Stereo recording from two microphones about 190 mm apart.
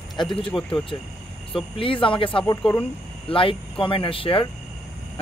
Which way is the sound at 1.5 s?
30° left (ahead or behind).